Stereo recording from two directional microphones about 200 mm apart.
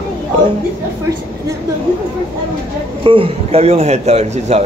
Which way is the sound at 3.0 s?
25° right (ahead or behind).